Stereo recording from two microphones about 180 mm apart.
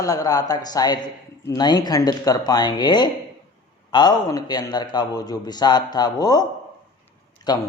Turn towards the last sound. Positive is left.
turn(degrees=20)  # may be behind; listen again after turning